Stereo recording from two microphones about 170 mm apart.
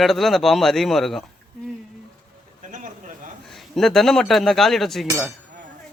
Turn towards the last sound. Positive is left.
turn(degrees=0)  # may be behind; listen again after turning